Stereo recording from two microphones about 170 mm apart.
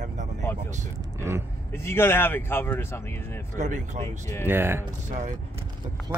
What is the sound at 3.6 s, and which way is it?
Speech, 45° right (ahead or behind).